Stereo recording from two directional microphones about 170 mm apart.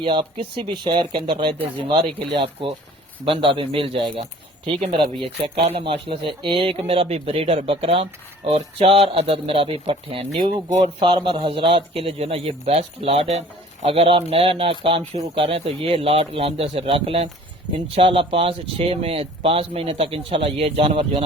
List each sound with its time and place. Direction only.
0.0 s speech: 30° right (ahead or behind)
2.1 s speech: 85° right
2.4 s speech: 30° right (ahead or behind)